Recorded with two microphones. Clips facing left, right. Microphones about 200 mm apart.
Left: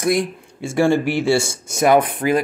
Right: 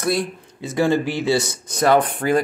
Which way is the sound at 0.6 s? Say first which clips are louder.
Left 2 dB; 20° right (ahead or behind).